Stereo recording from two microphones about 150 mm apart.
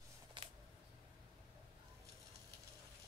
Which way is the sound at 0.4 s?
30° right (ahead or behind).